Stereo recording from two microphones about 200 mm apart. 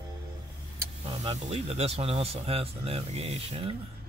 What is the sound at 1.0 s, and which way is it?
Speech, 30° right (ahead or behind).